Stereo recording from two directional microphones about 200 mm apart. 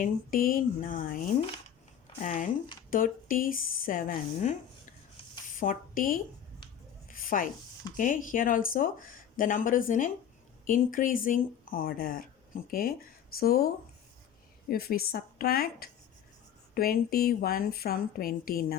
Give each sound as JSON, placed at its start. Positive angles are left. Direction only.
{"t": 0.0, "sound": "speech", "side_deg": 45}
{"t": 5.5, "sound": "a woman's voice", "side_deg": 45}
{"t": 7.1, "sound": "a sound", "side_deg": 45}
{"t": 7.9, "sound": "speech", "side_deg": 40}
{"t": 14.7, "sound": "speech", "side_deg": 50}